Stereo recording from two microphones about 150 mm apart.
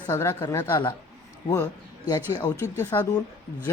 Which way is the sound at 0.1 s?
20° left (ahead or behind).